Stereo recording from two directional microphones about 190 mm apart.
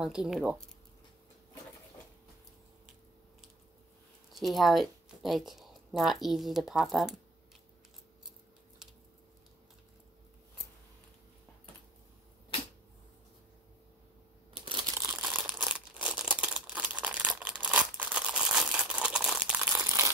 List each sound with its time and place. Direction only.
0.0 s speech: centre (ahead or behind)
4.3 s speech: centre (ahead or behind)
14.5 s crumpling: 25° right (ahead or behind)
15.0 s crumpling: 10° right (ahead or behind)